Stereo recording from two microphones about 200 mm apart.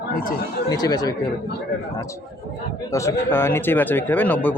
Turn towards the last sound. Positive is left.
turn(degrees=10)  # may be behind; listen again after turning